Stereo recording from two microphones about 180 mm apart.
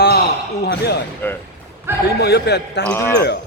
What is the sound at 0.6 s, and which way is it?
Speech, 65° left (ahead or behind).